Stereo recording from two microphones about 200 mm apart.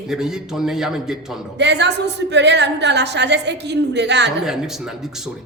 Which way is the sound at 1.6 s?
60° right (ahead or behind).